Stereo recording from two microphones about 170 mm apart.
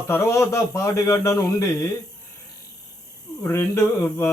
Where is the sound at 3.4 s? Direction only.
15° left (ahead or behind).